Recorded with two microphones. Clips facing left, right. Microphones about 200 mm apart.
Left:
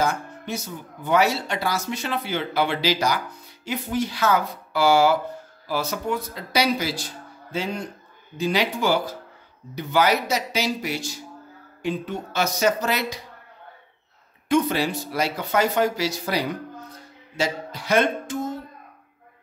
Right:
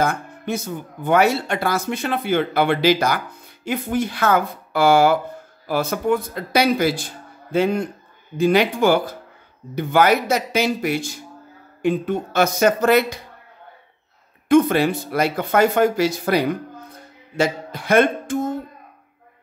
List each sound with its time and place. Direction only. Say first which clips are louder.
0.0 s speech: right 3 dB; 55° right (ahead or behind)
14.5 s speech: right 6 dB; 55° right (ahead or behind)
17.4 s music: right 5 dB; 55° right (ahead or behind)